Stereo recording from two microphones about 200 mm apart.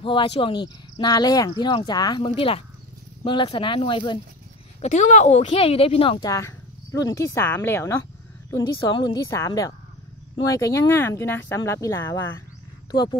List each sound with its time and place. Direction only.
0.0 s speech: 25° left (ahead or behind)
4.8 s speech: 35° left (ahead or behind)
6.3 s speech: 15° left (ahead or behind)